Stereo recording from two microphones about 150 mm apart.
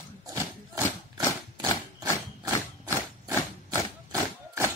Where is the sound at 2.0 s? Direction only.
25° right (ahead or behind).